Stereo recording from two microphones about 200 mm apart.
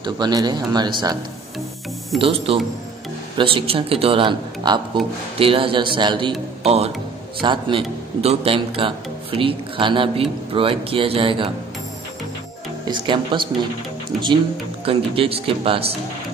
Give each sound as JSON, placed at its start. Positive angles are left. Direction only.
{"t": 0.0, "sound": "speech", "side_deg": -20}
{"t": 2.1, "sound": "speech", "side_deg": 0}
{"t": 3.3, "sound": "speech", "side_deg": -25}
{"t": 12.8, "sound": "speech", "side_deg": -25}
{"t": 14.9, "sound": "speech", "side_deg": -30}